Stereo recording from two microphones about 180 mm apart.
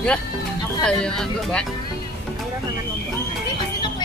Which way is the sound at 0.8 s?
5° left (ahead or behind).